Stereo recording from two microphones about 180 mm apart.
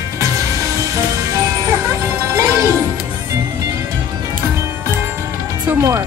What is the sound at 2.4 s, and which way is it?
Music, 15° right (ahead or behind).